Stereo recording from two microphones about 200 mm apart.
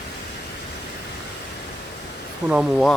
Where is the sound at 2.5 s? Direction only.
Centre (ahead or behind).